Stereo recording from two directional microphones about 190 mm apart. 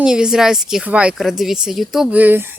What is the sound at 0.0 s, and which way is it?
Speech, 5° right (ahead or behind).